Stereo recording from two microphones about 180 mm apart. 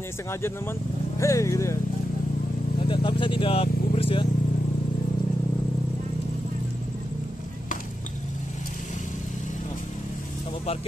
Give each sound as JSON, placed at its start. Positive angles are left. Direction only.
{"t": 0.3, "sound": "speech", "side_deg": 15}
{"t": 2.8, "sound": "speech", "side_deg": 25}